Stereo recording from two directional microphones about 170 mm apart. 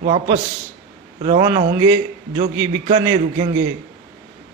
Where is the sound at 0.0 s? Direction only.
40° right (ahead or behind).